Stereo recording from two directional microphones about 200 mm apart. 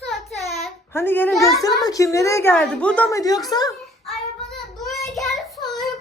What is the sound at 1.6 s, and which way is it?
A woman's voice, 15° left (ahead or behind).